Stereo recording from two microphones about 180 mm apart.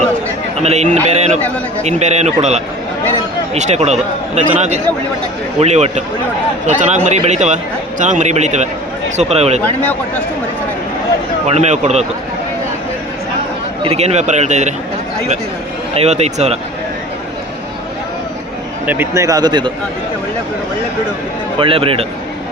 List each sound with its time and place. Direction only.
0.6 s a man's voice: 35° right (ahead or behind)
11.4 s speech: 40° right (ahead or behind)
13.8 s speech: 35° right (ahead or behind)
16.0 s speech: 35° right (ahead or behind)
18.9 s speech: 15° right (ahead or behind)
21.6 s speech: 30° right (ahead or behind)